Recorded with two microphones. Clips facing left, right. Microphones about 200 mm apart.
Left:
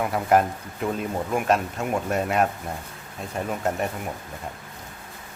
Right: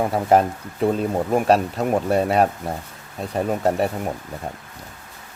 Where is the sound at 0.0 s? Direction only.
30° right (ahead or behind).